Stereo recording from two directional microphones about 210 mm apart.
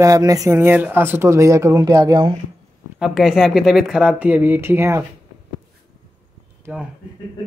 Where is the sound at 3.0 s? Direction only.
Centre (ahead or behind).